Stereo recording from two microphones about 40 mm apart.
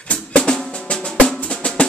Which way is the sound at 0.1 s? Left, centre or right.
Left.